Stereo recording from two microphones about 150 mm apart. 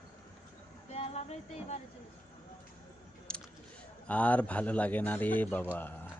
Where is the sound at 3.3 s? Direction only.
5° left (ahead or behind).